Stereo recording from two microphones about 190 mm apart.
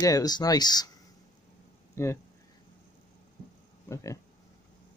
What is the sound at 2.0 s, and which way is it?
Speech, 15° left (ahead or behind).